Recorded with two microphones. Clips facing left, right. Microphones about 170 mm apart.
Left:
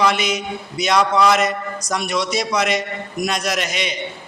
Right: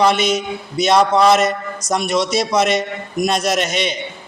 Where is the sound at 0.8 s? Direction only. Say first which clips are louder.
Right 3 dB; 25° right (ahead or behind).